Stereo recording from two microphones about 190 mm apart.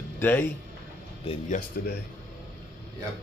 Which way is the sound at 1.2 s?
40° left (ahead or behind).